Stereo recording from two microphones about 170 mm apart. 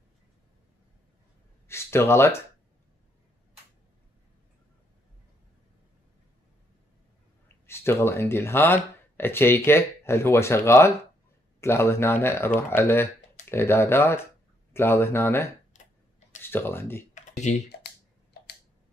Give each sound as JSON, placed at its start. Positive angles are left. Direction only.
{"t": 1.7, "sound": "speech", "side_deg": 15}
{"t": 7.6, "sound": "speech", "side_deg": 15}
{"t": 15.7, "sound": "tick-tock", "side_deg": 45}
{"t": 16.3, "sound": "speech", "side_deg": 15}
{"t": 17.1, "sound": "computer keyboard", "side_deg": 45}